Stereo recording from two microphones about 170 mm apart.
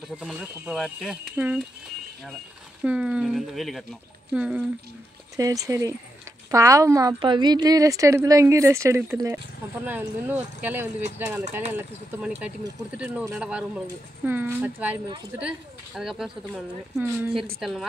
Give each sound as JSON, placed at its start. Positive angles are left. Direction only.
{"t": 0.2, "sound": "speech", "side_deg": 0}
{"t": 2.8, "sound": "speech", "side_deg": -5}
{"t": 5.3, "sound": "a woman's voice", "side_deg": -20}
{"t": 12.9, "sound": "speech", "side_deg": -10}